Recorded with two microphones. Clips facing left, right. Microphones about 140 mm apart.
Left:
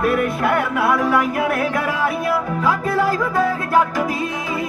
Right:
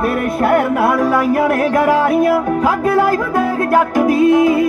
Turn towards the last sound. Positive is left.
turn(degrees=-60)  # may be behind; listen again after turning